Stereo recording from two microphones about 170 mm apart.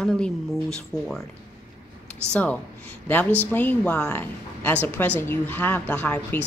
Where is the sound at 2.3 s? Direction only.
10° left (ahead or behind).